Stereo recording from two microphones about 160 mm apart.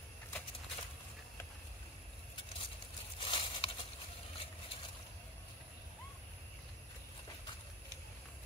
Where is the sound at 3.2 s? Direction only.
30° left (ahead or behind).